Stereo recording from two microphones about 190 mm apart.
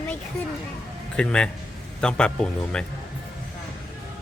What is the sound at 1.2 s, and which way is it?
Speech, 5° left (ahead or behind).